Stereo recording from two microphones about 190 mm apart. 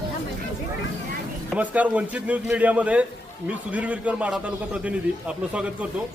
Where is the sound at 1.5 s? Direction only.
5° right (ahead or behind).